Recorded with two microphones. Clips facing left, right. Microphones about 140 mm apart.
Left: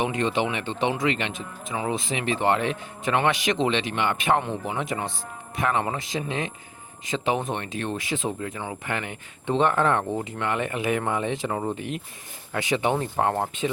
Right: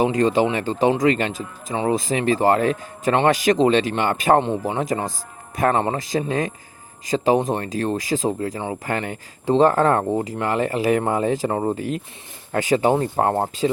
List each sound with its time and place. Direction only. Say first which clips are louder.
0.0 s speech: right 7 dB; 40° right (ahead or behind)